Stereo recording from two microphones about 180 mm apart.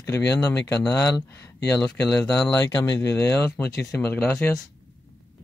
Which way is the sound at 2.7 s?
20° left (ahead or behind).